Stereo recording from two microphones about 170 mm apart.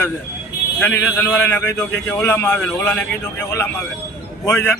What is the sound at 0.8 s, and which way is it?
A man's voice, 10° left (ahead or behind).